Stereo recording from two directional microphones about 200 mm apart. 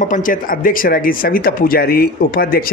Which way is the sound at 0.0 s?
40° left (ahead or behind).